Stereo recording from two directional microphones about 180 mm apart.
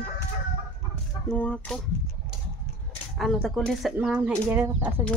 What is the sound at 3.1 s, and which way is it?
Speech, centre (ahead or behind).